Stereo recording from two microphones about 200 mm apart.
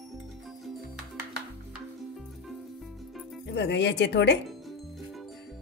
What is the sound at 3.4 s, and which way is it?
Speech, 60° left (ahead or behind).